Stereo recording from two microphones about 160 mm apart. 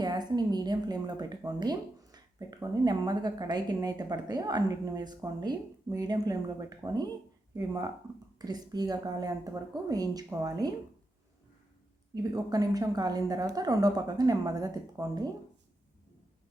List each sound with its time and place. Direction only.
0.0 s a woman's voice: 25° right (ahead or behind)
12.1 s speech: 20° right (ahead or behind)